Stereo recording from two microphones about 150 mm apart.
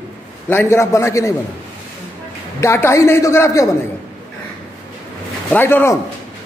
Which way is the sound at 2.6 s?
20° left (ahead or behind).